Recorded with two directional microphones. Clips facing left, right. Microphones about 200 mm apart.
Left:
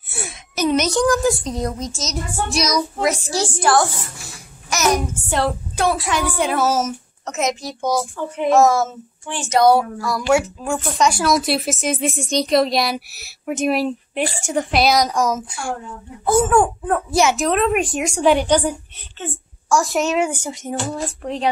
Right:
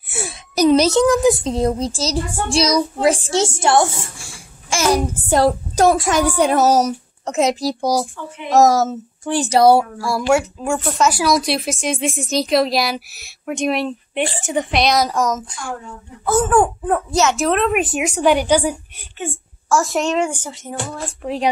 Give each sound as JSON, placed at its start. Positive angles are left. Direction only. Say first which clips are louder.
{"t": 0.1, "sound": "a woman's voice", "louder": "right 5 dB", "side_deg": -30}
{"t": 10.7, "sound": "a woman's voice", "louder": "right 1 dB", "side_deg": 0}
{"t": 15.3, "sound": "speech", "louder": "left 2 dB", "side_deg": 10}
{"t": 16.4, "sound": "a woman's voice", "louder": "right 1 dB", "side_deg": 0}
{"t": 17.1, "sound": "a woman's voice", "louder": "left 1 dB", "side_deg": 10}
{"t": 19.7, "sound": "a woman's voice", "louder": "even", "side_deg": 0}
{"t": 21.2, "sound": "a woman's voice", "louder": "right 2 dB", "side_deg": -5}